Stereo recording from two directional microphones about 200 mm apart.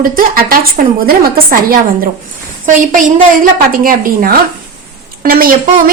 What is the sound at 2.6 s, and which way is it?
A woman's voice, 40° right (ahead or behind).